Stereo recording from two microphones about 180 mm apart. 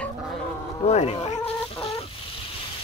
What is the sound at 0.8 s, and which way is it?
Speech, 35° left (ahead or behind).